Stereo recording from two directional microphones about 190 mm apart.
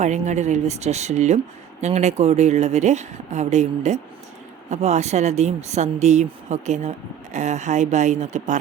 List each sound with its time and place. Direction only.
0.0 s speech: 35° right (ahead or behind)